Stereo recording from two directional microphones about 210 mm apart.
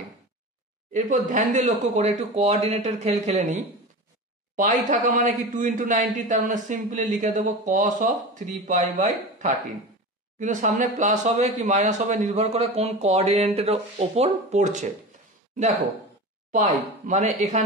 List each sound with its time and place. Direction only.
0.9 s speech: 40° right (ahead or behind)
4.8 s speech: 40° right (ahead or behind)
10.4 s speech: 35° right (ahead or behind)
16.5 s speech: 35° right (ahead or behind)